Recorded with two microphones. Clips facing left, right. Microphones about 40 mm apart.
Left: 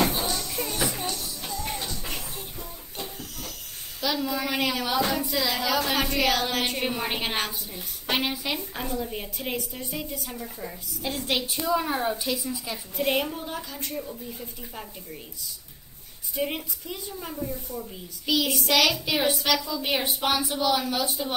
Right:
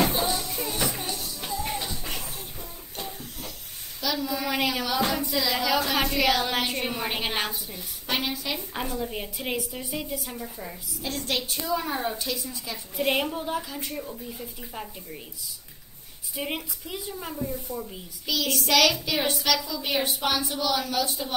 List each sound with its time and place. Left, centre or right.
0.2 s music: centre
0.5 s music: centre
2.1 s music: centre
4.0 s a woman's voice: centre
7.3 s a woman's voice: centre
8.1 s a woman's voice: centre
8.8 s a woman's voice: centre
11.0 s a woman's voice: centre
12.9 s a woman's voice: centre
16.3 s a woman's voice: centre
17.6 s speech: centre
18.2 s a woman's voice: centre